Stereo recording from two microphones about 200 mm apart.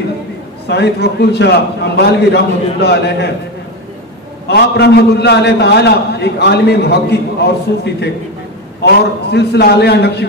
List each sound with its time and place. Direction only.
0.7 s a man's voice: 55° left (ahead or behind)
4.5 s a man's voice: 55° left (ahead or behind)